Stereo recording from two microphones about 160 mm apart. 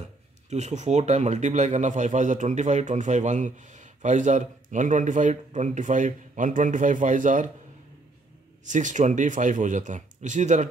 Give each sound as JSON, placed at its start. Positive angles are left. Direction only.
{"t": 0.5, "sound": "speech", "side_deg": -45}
{"t": 8.6, "sound": "speech", "side_deg": -50}